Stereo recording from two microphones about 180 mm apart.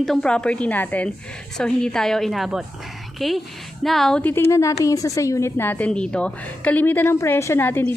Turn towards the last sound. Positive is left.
turn(degrees=10)  # may be behind; listen again after turning